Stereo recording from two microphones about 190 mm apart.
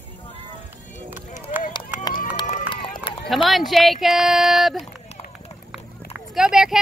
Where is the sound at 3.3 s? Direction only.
Centre (ahead or behind).